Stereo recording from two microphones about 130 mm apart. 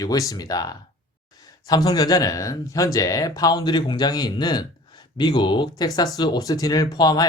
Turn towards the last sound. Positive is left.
turn(degrees=30)  # may be behind; listen again after turning